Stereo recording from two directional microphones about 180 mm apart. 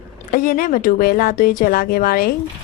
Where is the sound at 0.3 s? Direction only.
50° left (ahead or behind).